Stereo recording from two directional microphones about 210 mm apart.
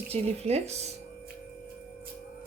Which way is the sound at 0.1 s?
30° right (ahead or behind).